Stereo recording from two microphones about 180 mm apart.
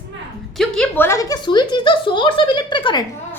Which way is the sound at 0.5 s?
5° left (ahead or behind).